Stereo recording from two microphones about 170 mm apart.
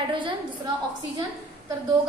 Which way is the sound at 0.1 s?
30° right (ahead or behind).